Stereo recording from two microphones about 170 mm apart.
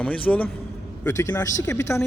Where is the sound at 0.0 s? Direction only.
10° left (ahead or behind).